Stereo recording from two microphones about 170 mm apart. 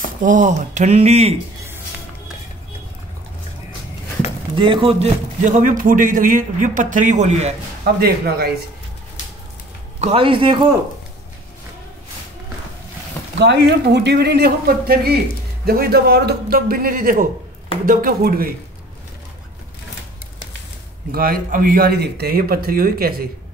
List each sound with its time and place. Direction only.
0.2 s a man's voice: 50° right (ahead or behind)
4.6 s a man's voice: 30° right (ahead or behind)
7.8 s speech: 65° right (ahead or behind)
9.9 s a man's voice: 35° right (ahead or behind)
13.4 s a man's voice: 90° right; by 18.5 s 60° right (ahead or behind)
21.1 s speech: 60° right (ahead or behind)